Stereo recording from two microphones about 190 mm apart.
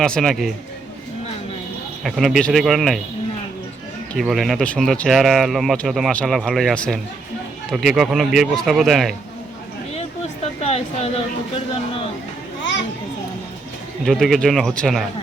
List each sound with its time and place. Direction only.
0.0 s speech: 5° left (ahead or behind)
2.0 s speech: centre (ahead or behind)
4.1 s speech: centre (ahead or behind)
9.9 s a sound: 35° left (ahead or behind)
11.5 s speech: 30° left (ahead or behind)
14.0 s speech: centre (ahead or behind)